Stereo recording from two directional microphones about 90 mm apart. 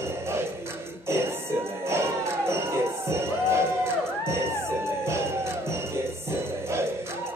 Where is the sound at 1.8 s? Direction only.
30° right (ahead or behind).